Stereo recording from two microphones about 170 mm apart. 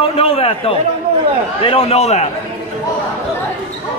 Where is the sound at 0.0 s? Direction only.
35° left (ahead or behind).